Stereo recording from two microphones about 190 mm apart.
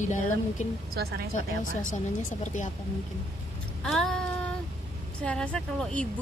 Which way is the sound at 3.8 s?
Centre (ahead or behind).